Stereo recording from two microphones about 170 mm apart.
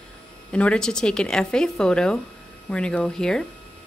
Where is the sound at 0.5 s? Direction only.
5° left (ahead or behind).